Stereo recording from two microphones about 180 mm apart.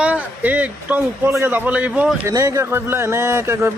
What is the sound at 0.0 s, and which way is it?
A man's voice, 10° right (ahead or behind).